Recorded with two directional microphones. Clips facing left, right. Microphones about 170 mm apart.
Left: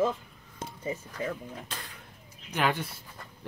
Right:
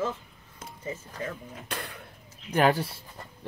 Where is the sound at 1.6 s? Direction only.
65° right (ahead or behind).